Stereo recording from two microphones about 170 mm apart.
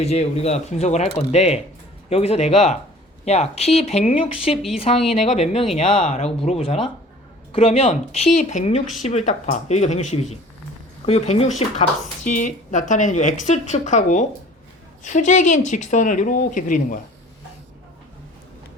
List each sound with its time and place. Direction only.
0.0 s speech: 35° left (ahead or behind)
4.5 s speech: centre (ahead or behind)
5.1 s speech: 40° left (ahead or behind)